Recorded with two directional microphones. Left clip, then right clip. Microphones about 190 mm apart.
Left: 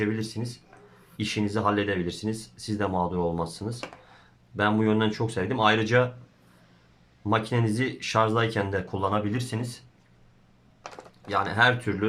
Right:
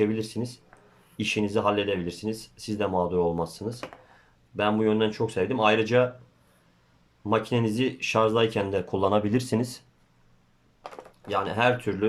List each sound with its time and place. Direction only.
0.0 s speech: 15° right (ahead or behind)
7.3 s speech: 10° right (ahead or behind); by 9.6 s 25° right (ahead or behind)
11.3 s speech: 10° right (ahead or behind)